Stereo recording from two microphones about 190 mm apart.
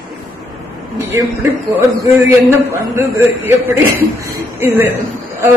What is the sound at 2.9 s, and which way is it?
A man's voice, 10° right (ahead or behind).